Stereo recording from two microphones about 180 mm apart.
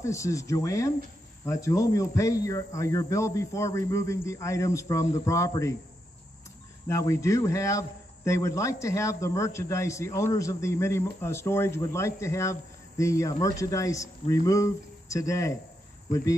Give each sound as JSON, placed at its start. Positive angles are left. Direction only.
{"t": 0.0, "sound": "a man's voice", "side_deg": 15}
{"t": 6.9, "sound": "a man's voice", "side_deg": 15}